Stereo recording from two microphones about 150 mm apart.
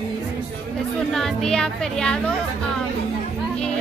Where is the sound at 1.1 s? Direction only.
5° left (ahead or behind).